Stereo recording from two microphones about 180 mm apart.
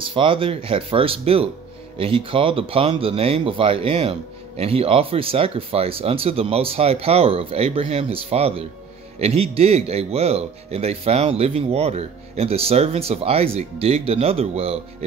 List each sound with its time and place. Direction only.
0.0 s speech: 30° right (ahead or behind)